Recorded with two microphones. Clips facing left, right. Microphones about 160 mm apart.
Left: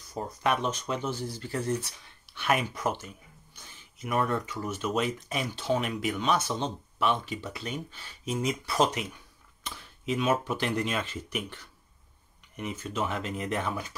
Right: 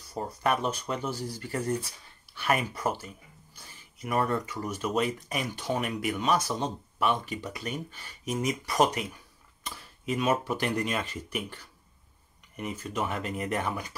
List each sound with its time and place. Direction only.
0.1 s speech: 5° right (ahead or behind)
4.4 s speech: 10° right (ahead or behind)
4.8 s speech: centre (ahead or behind)
5.4 s speech: 10° right (ahead or behind)
9.7 s speech: 5° right (ahead or behind)